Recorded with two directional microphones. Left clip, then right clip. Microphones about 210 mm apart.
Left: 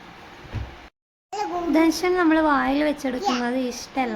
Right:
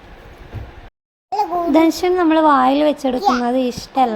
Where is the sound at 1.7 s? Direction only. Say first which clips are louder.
Right 4 dB; 20° right (ahead or behind).